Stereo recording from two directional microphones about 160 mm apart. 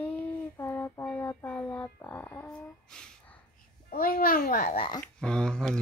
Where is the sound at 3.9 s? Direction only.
65° left (ahead or behind).